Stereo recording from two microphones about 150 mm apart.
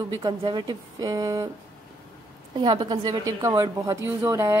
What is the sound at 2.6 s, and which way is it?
Speech, 30° right (ahead or behind).